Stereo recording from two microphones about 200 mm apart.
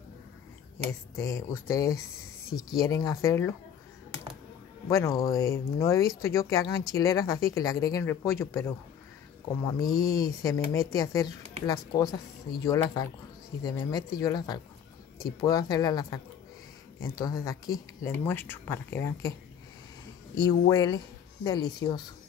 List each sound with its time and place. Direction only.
1.1 s speech: 15° left (ahead or behind)
4.8 s speech: 15° left (ahead or behind)
9.8 s speech: 20° left (ahead or behind)
17.2 s speech: 15° left (ahead or behind)
20.3 s speech: 20° left (ahead or behind)